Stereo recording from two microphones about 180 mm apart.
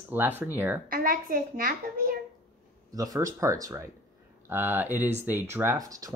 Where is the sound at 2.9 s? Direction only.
20° right (ahead or behind).